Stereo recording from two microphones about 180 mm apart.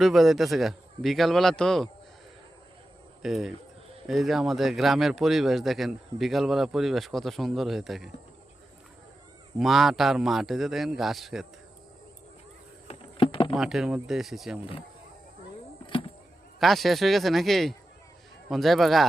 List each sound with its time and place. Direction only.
0.0 s speech: centre (ahead or behind)
3.2 s speech: centre (ahead or behind)
9.6 s speech: centre (ahead or behind)
12.9 s a sound: 30° left (ahead or behind)
13.6 s speech: centre (ahead or behind)
16.6 s speech: centre (ahead or behind)